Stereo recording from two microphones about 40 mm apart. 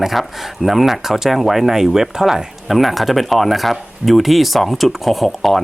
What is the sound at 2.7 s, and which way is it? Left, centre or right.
Speech, centre.